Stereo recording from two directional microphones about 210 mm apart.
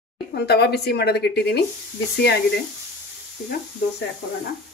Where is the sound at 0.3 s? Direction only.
50° left (ahead or behind).